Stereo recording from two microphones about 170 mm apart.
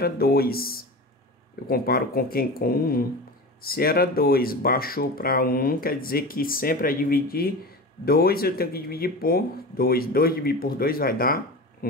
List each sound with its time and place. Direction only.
0.0 s speech: 65° left (ahead or behind)